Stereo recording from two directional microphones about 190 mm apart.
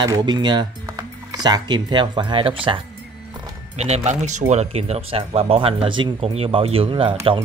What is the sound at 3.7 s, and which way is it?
Speech, 35° right (ahead or behind).